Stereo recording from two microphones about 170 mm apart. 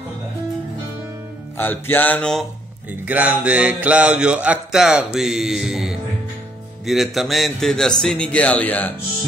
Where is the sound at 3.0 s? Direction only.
10° right (ahead or behind); by 8.9 s 10° left (ahead or behind).